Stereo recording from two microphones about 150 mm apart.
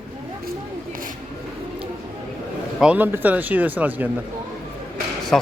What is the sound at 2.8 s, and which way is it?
Speech, 10° right (ahead or behind).